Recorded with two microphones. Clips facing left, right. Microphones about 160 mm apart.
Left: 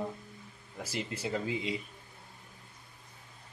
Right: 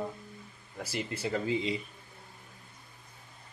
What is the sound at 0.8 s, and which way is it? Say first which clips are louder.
Speech: right 2 dB; 20° left (ahead or behind).